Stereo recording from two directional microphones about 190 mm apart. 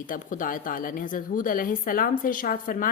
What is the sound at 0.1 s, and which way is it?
A woman's voice, 45° left (ahead or behind).